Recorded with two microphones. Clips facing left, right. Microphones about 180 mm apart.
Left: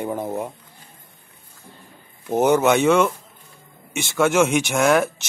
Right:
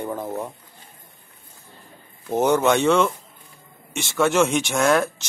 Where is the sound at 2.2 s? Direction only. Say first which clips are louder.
Left 2 dB; 10° left (ahead or behind).